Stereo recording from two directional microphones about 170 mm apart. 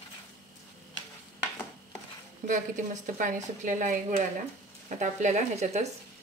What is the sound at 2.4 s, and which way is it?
Speech, 50° right (ahead or behind).